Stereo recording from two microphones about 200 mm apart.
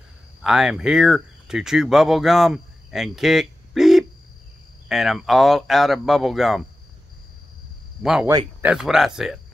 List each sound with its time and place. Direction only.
0.4 s speech: 5° right (ahead or behind)
8.0 s speech: centre (ahead or behind)
8.3 s speech: 15° right (ahead or behind)
8.7 s speech: centre (ahead or behind)